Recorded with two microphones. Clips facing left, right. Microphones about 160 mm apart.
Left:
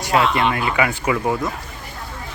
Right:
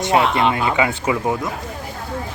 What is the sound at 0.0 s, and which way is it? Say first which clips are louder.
Speech: right 2 dB; 25° right (ahead or behind).